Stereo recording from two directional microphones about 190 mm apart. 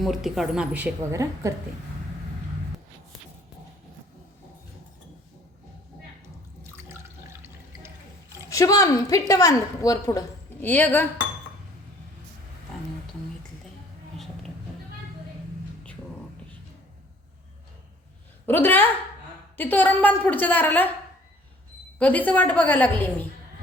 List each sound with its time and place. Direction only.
0.0 s speech: centre (ahead or behind); by 1.5 s 15° right (ahead or behind)
8.4 s a woman's voice: 20° left (ahead or behind)
18.4 s a woman's voice: 10° left (ahead or behind)
21.9 s a woman's voice: 10° left (ahead or behind)